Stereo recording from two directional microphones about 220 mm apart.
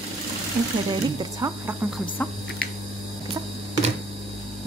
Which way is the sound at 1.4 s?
15° right (ahead or behind).